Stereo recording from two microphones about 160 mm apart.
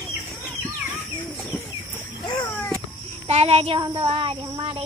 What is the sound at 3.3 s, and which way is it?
Child singing, 40° right (ahead or behind).